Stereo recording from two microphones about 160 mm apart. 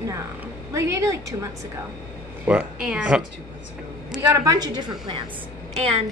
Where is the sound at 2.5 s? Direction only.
5° right (ahead or behind).